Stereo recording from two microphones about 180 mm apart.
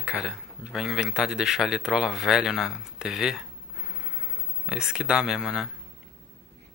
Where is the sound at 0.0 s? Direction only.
5° right (ahead or behind).